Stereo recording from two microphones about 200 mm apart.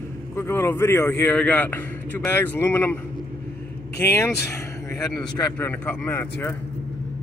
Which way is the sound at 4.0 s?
15° left (ahead or behind).